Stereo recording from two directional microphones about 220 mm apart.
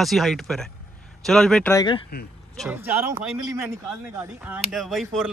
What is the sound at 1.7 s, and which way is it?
Speech, 20° left (ahead or behind).